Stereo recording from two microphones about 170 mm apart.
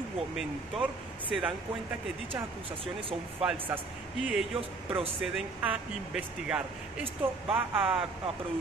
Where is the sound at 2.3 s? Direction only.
35° right (ahead or behind).